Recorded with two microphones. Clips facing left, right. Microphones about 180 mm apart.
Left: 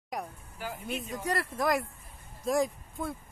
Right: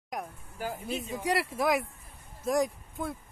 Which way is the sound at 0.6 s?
45° right (ahead or behind).